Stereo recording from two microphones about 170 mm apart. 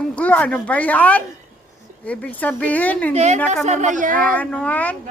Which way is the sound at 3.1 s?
40° right (ahead or behind).